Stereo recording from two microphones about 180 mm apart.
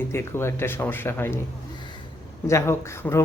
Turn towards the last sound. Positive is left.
turn(degrees=15)  # may be behind; listen again after turning